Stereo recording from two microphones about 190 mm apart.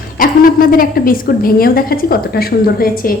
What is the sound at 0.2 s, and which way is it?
A woman's voice, 50° left (ahead or behind).